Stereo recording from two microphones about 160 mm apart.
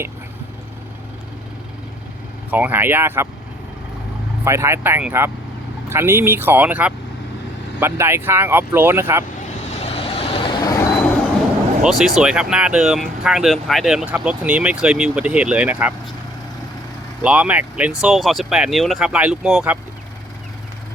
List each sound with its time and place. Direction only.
2.5 s speech: 10° right (ahead or behind)
4.4 s speech: 15° right (ahead or behind)
9.7 s vehicle: 40° left (ahead or behind); by 10.8 s 25° left (ahead or behind)
11.8 s speech: centre (ahead or behind)
17.2 s speech: 10° right (ahead or behind)